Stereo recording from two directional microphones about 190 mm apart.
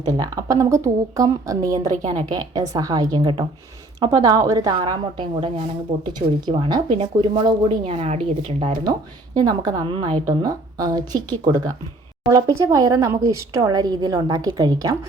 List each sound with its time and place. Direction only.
0.0 s a woman's voice: 20° right (ahead or behind)
12.3 s speech: 15° right (ahead or behind)